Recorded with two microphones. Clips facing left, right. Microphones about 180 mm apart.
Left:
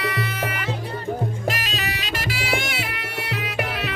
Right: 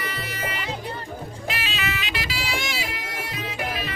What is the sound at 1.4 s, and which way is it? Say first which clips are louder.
Music: left 3 dB; 40° left (ahead or behind).